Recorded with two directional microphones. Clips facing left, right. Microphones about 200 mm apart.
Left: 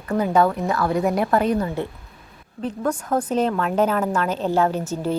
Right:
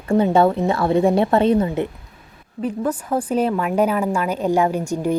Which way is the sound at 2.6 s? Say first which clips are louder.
Right 2 dB; 5° right (ahead or behind).